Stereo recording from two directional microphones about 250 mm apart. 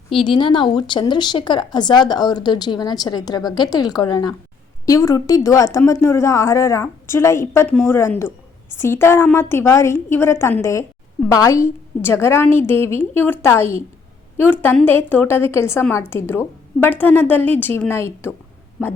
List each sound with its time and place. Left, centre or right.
0.1 s speech: left